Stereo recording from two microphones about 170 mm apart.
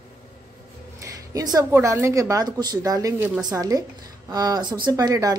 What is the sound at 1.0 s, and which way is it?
Speech, 20° right (ahead or behind).